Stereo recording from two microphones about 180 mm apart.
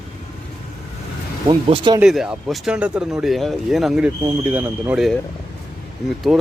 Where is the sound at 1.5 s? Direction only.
30° right (ahead or behind).